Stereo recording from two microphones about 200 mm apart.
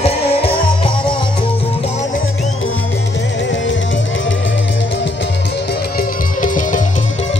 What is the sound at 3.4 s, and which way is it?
Music, 65° left (ahead or behind).